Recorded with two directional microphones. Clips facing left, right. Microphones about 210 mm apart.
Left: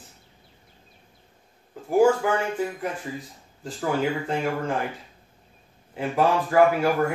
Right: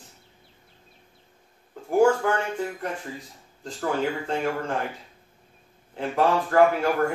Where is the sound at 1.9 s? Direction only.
5° left (ahead or behind).